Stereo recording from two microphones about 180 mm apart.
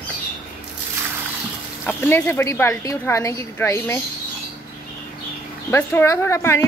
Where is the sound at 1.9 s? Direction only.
10° left (ahead or behind).